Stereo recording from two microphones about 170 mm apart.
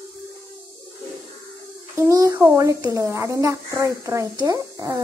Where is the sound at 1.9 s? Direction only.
20° right (ahead or behind).